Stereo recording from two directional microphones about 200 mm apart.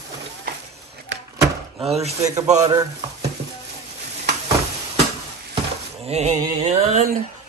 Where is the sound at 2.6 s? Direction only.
20° right (ahead or behind).